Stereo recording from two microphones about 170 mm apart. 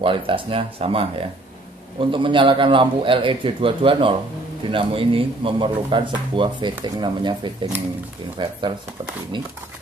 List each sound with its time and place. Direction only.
0.0 s a man's voice: 30° right (ahead or behind)